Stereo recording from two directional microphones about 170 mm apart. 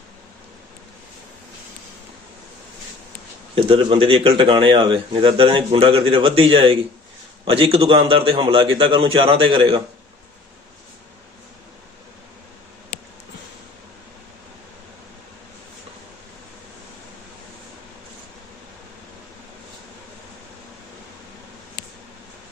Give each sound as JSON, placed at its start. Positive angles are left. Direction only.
{"t": 3.5, "sound": "speech", "side_deg": -35}